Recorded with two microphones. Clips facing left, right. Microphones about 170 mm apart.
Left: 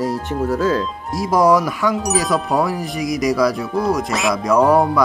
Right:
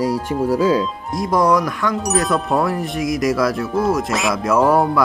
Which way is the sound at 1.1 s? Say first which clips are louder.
Left 2 dB; centre (ahead or behind).